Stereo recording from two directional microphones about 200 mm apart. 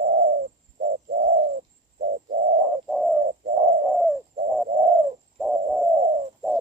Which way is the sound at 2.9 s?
5° right (ahead or behind).